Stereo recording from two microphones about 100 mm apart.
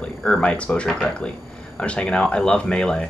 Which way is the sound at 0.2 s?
10° left (ahead or behind).